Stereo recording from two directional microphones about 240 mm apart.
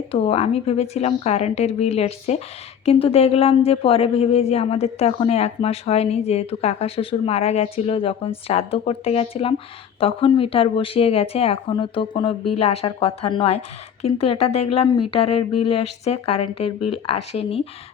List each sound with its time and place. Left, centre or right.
0.1 s speech: left